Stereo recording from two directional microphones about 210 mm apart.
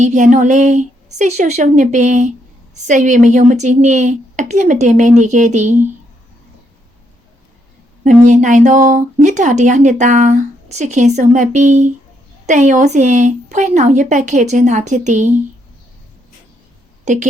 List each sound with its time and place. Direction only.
0.0 s speech: 35° right (ahead or behind)
8.0 s speech: 35° right (ahead or behind)
17.1 s speech: 35° right (ahead or behind)